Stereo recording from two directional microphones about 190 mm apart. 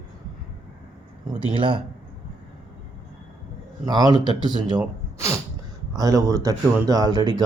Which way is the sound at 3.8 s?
20° right (ahead or behind).